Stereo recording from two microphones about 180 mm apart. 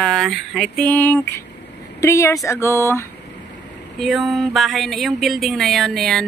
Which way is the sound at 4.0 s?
Centre (ahead or behind).